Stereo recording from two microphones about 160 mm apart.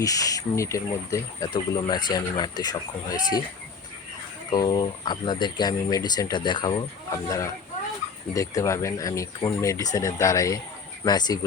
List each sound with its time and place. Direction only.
0.0 s speech: 20° left (ahead or behind)
4.5 s speech: 25° left (ahead or behind)